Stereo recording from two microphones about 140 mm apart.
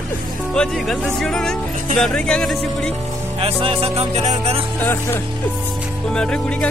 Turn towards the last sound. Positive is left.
turn(degrees=5)  # may be behind; listen again after turning